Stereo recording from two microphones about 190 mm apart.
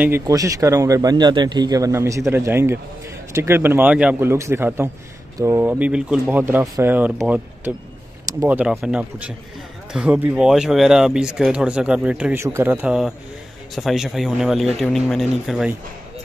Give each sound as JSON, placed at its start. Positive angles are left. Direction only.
{"t": 0.0, "sound": "speech", "side_deg": -15}